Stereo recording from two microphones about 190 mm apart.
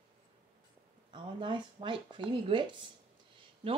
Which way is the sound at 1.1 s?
25° right (ahead or behind).